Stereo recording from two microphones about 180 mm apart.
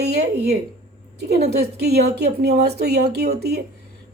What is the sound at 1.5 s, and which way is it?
A woman's voice, 65° right (ahead or behind).